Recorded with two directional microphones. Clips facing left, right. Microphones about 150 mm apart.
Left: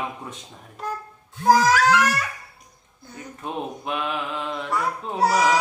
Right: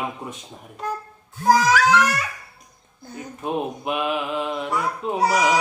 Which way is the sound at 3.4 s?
15° right (ahead or behind).